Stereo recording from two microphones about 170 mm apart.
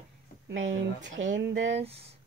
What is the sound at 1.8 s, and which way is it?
Speech, 35° right (ahead or behind).